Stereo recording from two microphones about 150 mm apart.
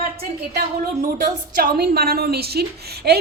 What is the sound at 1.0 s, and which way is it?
Speech, 55° right (ahead or behind).